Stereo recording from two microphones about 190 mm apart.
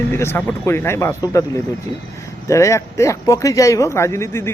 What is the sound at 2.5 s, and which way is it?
Speech, 15° left (ahead or behind).